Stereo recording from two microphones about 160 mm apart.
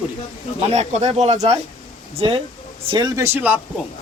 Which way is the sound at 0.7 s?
45° right (ahead or behind).